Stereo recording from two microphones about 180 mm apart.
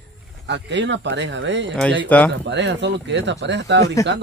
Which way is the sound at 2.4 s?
80° right.